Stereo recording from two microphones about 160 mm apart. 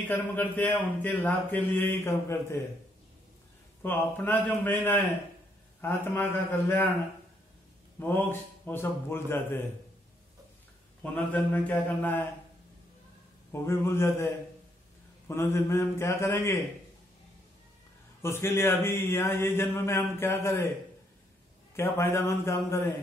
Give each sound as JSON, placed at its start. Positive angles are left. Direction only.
{"t": 0.1, "sound": "speech", "side_deg": 10}
{"t": 3.8, "sound": "speech", "side_deg": 10}
{"t": 8.0, "sound": "speech", "side_deg": 10}
{"t": 11.0, "sound": "speech", "side_deg": 10}
{"t": 13.5, "sound": "speech", "side_deg": 15}
{"t": 18.2, "sound": "speech", "side_deg": 15}
{"t": 21.7, "sound": "speech", "side_deg": 15}